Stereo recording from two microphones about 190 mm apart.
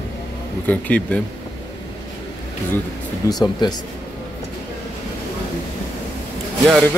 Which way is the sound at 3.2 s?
15° left (ahead or behind).